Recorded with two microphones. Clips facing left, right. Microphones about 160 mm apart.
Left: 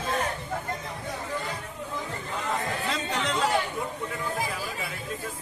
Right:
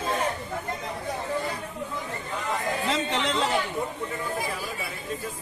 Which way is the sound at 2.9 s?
25° right (ahead or behind).